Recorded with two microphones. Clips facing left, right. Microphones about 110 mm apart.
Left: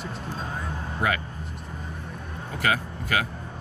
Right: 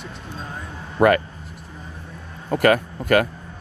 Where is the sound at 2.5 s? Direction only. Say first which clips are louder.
Right 9 dB; 55° right (ahead or behind).